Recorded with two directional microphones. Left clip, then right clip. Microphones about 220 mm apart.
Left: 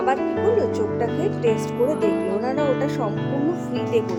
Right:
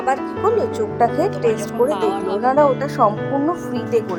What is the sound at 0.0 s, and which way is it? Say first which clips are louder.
A woman's voice: right 1 dB; 15° right (ahead or behind).